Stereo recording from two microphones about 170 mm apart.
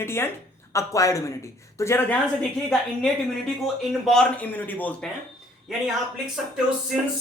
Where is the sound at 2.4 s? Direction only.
5° left (ahead or behind).